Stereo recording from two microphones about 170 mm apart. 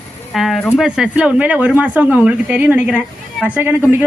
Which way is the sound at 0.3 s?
Centre (ahead or behind).